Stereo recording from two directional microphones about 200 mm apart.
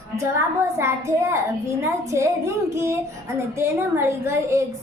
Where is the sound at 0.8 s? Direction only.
15° right (ahead or behind).